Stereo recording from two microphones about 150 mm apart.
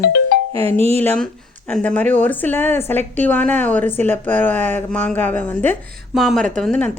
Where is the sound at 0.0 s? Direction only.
90° left.